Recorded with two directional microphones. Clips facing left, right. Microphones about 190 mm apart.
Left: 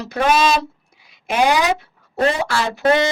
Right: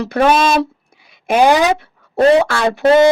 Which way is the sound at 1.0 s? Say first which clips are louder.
Right 6 dB; 55° right (ahead or behind).